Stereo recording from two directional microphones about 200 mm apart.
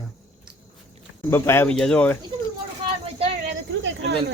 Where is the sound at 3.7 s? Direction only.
65° right (ahead or behind).